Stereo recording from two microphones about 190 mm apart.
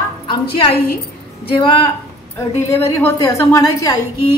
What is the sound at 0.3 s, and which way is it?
Speech, 30° left (ahead or behind).